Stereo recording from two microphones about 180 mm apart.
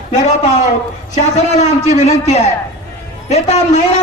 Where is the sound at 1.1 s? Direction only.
40° left (ahead or behind).